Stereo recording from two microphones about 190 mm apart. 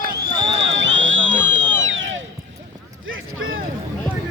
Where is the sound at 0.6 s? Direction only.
70° right (ahead or behind).